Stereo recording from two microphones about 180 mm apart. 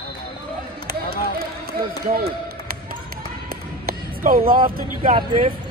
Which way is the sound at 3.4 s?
55° right (ahead or behind).